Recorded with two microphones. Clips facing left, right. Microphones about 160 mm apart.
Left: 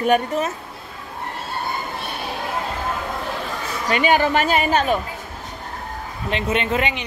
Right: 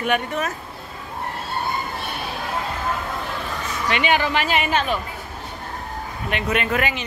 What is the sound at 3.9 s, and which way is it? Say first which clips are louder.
Speech: left 3 dB; 40° left (ahead or behind).